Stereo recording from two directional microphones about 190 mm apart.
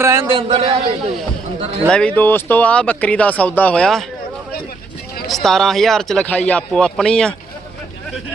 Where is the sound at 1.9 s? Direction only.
5° left (ahead or behind).